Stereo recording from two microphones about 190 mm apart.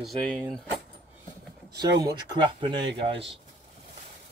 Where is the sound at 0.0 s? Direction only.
Centre (ahead or behind).